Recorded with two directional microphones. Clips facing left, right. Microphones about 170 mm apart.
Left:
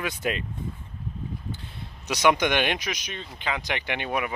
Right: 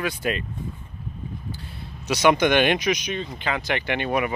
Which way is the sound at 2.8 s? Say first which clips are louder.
Right 9 dB; 5° right (ahead or behind).